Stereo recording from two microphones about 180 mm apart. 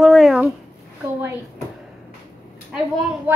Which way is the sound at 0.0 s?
Centre (ahead or behind).